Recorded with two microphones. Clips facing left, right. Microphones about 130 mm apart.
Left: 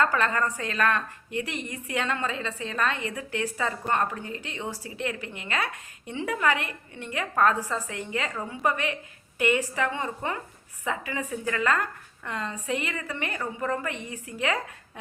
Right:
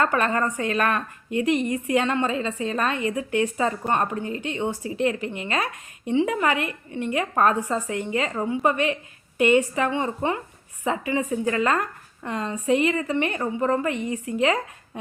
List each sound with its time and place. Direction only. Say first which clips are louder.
0.0 s speech: right 3 dB; 25° right (ahead or behind)
13.4 s a woman's voice: right 6 dB; 35° right (ahead or behind)
13.8 s speech: right 8 dB; 25° right (ahead or behind)